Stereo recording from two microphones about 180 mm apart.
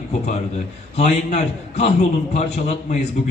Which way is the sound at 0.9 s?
35° left (ahead or behind).